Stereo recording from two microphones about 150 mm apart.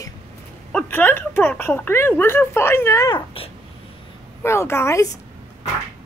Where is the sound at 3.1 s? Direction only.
40° left (ahead or behind).